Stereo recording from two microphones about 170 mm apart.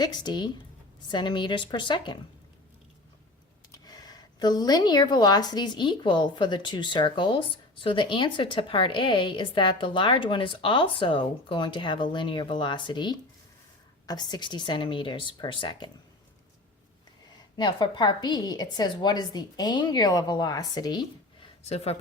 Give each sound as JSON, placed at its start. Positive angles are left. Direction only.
{"t": 0.0, "sound": "a woman's voice", "side_deg": 25}
{"t": 3.8, "sound": "a woman's voice", "side_deg": 25}
{"t": 17.6, "sound": "a woman's voice", "side_deg": 25}
{"t": 21.6, "sound": "speech", "side_deg": 35}